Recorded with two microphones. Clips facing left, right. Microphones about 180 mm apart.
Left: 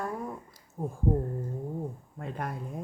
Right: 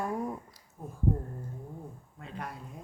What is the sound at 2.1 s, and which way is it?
Speech, 50° left (ahead or behind).